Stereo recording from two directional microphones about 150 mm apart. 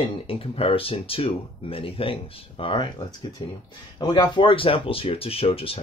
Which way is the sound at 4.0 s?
30° left (ahead or behind).